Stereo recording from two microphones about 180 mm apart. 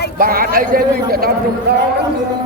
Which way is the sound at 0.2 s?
55° right (ahead or behind).